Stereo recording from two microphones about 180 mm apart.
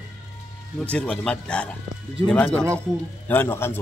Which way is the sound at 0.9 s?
5° left (ahead or behind).